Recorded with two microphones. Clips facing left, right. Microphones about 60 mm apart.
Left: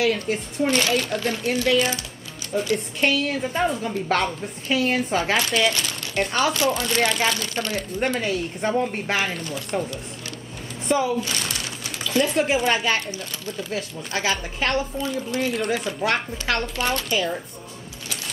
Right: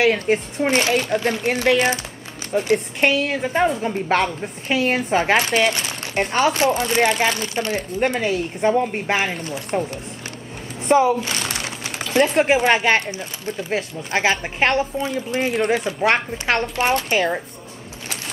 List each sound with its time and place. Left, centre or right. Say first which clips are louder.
0.0 s speech: right 5 dB; right
0.7 s speech: right 3 dB; right
3.2 s speech: right 4 dB; right
3.8 s speech: right 3 dB; right
14.1 s speech: right 5 dB; right